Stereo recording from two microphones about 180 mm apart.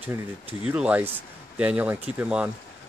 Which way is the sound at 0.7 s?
5° right (ahead or behind).